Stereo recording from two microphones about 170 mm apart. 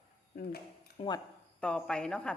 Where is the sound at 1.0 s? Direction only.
35° left (ahead or behind).